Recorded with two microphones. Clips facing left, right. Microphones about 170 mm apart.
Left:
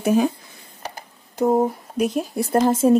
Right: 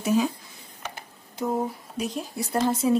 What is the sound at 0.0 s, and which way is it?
Speech, 55° left (ahead or behind).